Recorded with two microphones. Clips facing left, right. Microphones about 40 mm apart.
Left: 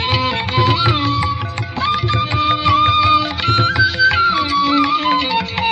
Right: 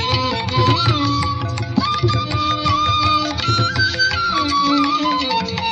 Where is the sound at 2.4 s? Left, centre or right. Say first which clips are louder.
Left 5 dB; left.